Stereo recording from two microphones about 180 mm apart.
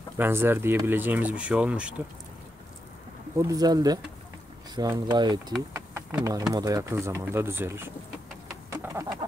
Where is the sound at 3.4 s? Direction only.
20° right (ahead or behind).